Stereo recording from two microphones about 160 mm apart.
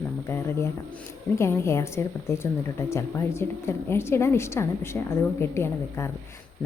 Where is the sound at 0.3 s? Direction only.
15° left (ahead or behind).